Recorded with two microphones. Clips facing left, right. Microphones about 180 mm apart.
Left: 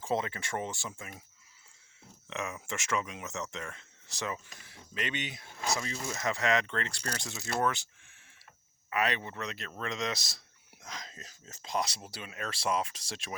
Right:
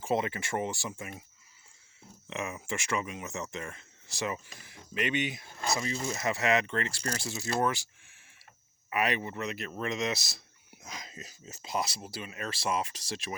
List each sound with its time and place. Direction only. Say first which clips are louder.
0.0 s speech: right 2 dB; 10° right (ahead or behind)
2.3 s speech: right 2 dB; 5° right (ahead or behind)
8.9 s speech: right 2 dB; 10° right (ahead or behind)